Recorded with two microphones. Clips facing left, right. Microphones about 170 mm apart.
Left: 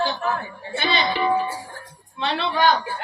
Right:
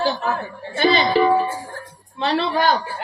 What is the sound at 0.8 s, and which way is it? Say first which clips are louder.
Speech: right 7 dB; 40° right (ahead or behind).